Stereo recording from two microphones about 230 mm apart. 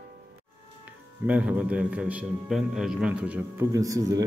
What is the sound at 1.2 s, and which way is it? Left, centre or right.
A man's voice, centre.